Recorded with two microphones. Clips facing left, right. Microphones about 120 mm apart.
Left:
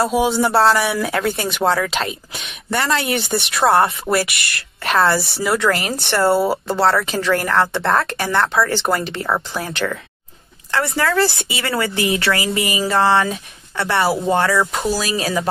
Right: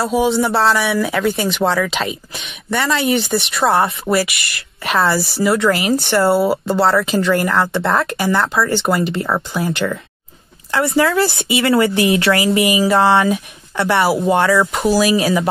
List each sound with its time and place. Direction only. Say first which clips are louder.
0.0 s speech: right 1 dB; centre (ahead or behind)
11.0 s speech: right 3 dB; 20° right (ahead or behind)
14.6 s speech: right 4 dB; centre (ahead or behind)